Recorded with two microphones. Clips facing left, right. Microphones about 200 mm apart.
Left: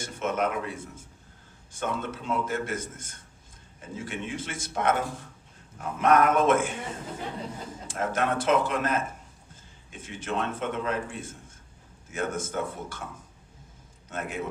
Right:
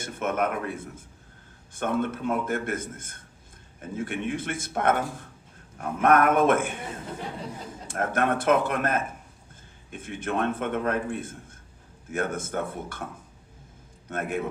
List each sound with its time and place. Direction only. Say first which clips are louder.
0.0 s a man's voice: right 1 dB; 55° right (ahead or behind)
7.9 s a man's voice: right 2 dB; 55° right (ahead or behind)
14.1 s a man's voice: right 4 dB; 55° right (ahead or behind)